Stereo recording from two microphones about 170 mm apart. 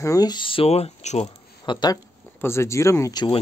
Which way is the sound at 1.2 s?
25° left (ahead or behind).